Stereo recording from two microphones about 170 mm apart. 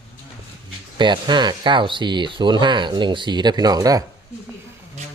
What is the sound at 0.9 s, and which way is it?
Speech, 25° right (ahead or behind).